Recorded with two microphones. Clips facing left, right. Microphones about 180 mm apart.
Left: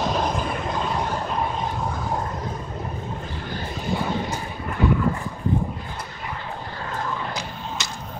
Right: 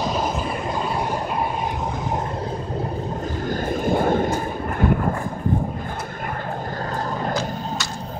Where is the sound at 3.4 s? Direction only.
50° right (ahead or behind).